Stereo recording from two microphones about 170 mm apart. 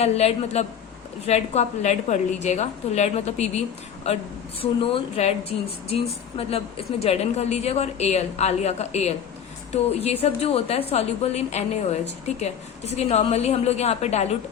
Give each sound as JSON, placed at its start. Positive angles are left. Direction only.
{"t": 0.0, "sound": "a woman's voice", "side_deg": 35}
{"t": 4.6, "sound": "a woman's voice", "side_deg": 30}